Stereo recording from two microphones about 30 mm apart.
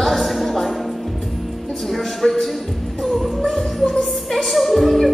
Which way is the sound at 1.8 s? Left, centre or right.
Centre.